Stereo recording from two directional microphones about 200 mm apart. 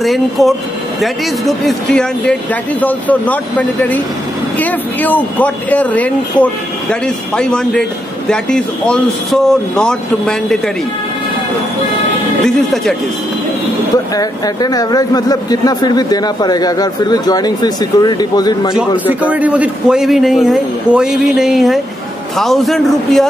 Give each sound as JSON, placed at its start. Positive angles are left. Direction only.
{"t": 0.0, "sound": "a man's voice", "side_deg": 0}
{"t": 12.4, "sound": "a man's voice", "side_deg": 0}
{"t": 14.1, "sound": "speech", "side_deg": 20}
{"t": 18.8, "sound": "a man's voice", "side_deg": -5}